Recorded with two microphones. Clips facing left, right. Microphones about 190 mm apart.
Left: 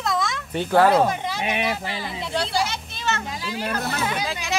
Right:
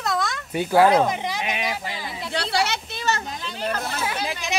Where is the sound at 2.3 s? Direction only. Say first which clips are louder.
Right 1 dB; 70° right (ahead or behind).